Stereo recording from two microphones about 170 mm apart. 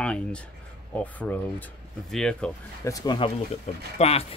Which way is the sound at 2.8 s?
20° left (ahead or behind).